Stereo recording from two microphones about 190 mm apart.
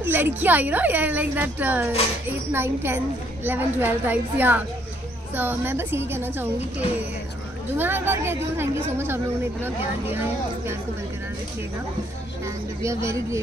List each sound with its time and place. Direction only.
0.0 s a woman's voice: 10° right (ahead or behind)
7.7 s a woman's voice: 10° right (ahead or behind)
12.4 s a woman's voice: 15° right (ahead or behind)